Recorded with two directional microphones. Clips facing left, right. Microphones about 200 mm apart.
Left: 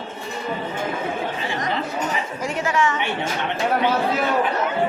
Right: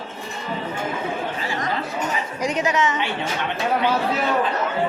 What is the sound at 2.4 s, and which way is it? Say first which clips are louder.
Speech: right 1 dB; 20° right (ahead or behind).